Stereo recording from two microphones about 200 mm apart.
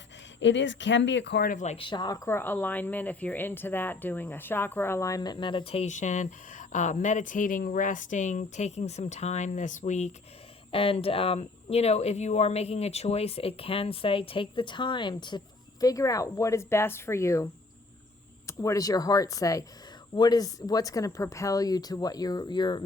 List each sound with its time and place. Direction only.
0.3 s speech: 65° left (ahead or behind); by 22.8 s 20° left (ahead or behind)